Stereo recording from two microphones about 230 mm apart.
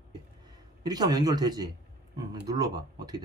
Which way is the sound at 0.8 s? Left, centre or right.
Centre.